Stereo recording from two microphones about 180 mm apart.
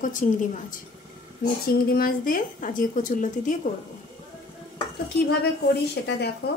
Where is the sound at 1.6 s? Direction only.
55° left (ahead or behind).